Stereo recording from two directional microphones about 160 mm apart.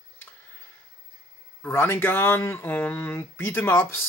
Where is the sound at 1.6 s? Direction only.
15° left (ahead or behind).